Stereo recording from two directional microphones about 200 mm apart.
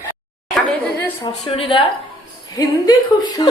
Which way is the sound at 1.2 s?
25° left (ahead or behind).